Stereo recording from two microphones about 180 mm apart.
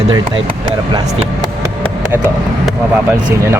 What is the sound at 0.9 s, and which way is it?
Music, 25° right (ahead or behind).